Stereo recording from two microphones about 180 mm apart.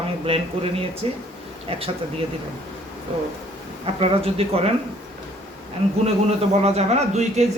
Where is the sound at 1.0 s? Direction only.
30° right (ahead or behind).